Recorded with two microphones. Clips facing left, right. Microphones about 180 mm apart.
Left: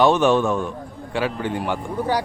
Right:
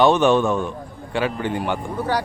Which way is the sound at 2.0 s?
10° left (ahead or behind).